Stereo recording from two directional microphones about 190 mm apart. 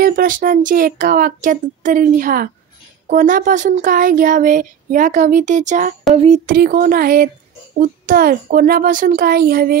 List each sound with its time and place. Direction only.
0.0 s speech: 50° right (ahead or behind)
6.1 s a sound: 35° right (ahead or behind)
6.5 s speech: 50° right (ahead or behind)